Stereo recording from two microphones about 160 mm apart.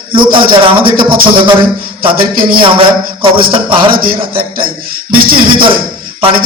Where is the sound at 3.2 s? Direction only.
30° right (ahead or behind).